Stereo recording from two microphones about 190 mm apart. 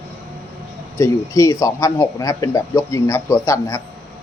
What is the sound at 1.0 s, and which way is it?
A man's voice, 15° left (ahead or behind).